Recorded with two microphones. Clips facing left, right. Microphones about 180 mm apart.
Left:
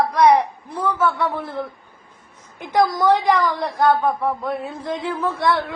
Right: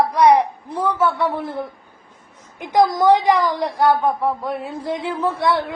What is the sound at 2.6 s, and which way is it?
A woman's voice, 15° right (ahead or behind).